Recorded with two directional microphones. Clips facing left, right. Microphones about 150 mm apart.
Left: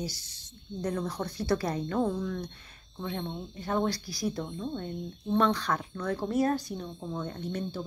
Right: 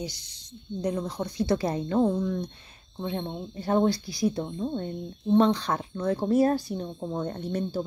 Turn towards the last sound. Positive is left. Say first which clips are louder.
# right 4 dB
turn(degrees=-35)  # may be behind; listen again after turning